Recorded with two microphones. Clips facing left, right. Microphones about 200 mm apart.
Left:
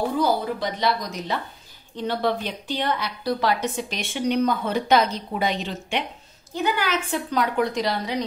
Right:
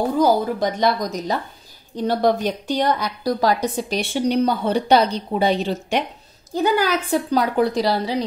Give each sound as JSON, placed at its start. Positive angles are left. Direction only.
{"t": 0.2, "sound": "a woman's voice", "side_deg": -45}